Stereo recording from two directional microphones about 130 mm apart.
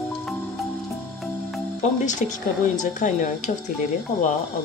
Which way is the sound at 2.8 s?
80° left.